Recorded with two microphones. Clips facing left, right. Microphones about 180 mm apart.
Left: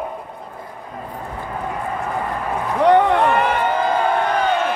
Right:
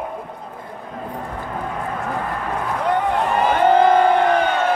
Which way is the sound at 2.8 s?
75° left (ahead or behind).